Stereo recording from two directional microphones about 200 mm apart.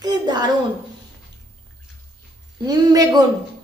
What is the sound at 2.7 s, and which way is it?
Speech, 20° right (ahead or behind).